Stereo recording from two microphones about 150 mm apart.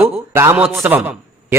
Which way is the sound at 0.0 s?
15° right (ahead or behind).